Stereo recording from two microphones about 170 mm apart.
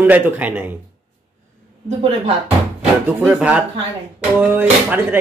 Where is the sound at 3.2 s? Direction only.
5° right (ahead or behind).